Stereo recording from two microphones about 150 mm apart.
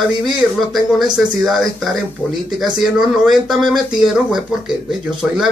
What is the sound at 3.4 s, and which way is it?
Speech, centre (ahead or behind).